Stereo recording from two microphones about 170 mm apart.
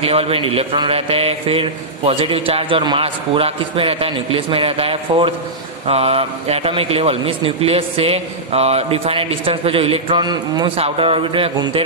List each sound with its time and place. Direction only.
0.0 s a man's voice: 35° right (ahead or behind)